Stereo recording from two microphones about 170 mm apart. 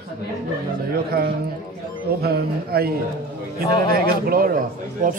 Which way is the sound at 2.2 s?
65° right (ahead or behind).